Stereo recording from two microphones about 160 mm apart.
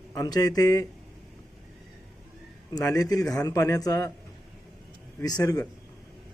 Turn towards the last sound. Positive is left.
turn(degrees=20)  # may be behind; listen again after turning